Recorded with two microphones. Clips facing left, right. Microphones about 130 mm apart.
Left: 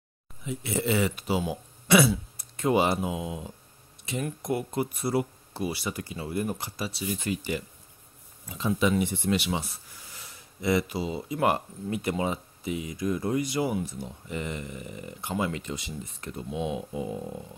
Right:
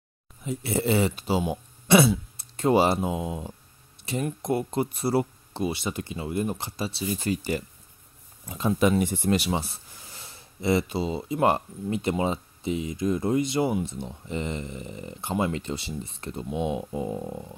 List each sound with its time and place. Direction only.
0.5 s speech: 35° right (ahead or behind)